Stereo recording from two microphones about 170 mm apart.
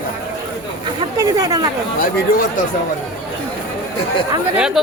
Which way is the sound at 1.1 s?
20° right (ahead or behind).